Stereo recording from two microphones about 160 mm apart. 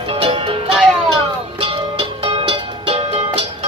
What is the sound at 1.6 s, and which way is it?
Music, 35° right (ahead or behind).